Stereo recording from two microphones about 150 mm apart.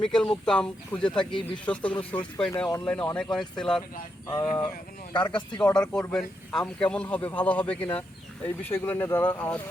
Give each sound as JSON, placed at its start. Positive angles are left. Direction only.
{"t": 0.0, "sound": "a man's voice", "side_deg": 5}
{"t": 4.3, "sound": "speech", "side_deg": 20}
{"t": 5.7, "sound": "a man's voice", "side_deg": 5}